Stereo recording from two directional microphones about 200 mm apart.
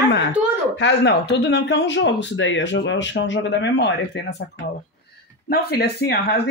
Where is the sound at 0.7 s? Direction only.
60° left (ahead or behind).